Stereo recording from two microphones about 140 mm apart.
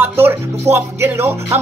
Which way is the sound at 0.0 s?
15° right (ahead or behind).